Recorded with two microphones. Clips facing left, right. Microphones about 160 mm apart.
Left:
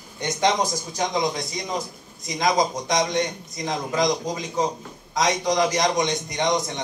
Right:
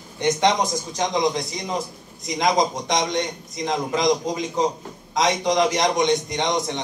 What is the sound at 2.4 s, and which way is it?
A man's voice, 20° right (ahead or behind).